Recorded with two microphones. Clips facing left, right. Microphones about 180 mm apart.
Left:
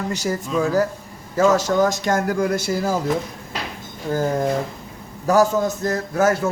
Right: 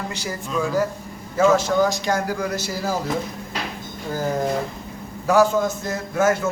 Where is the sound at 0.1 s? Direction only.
40° left (ahead or behind).